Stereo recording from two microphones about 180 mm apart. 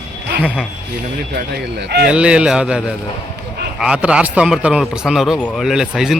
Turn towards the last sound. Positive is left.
turn(degrees=-5)  # may be behind; listen again after turning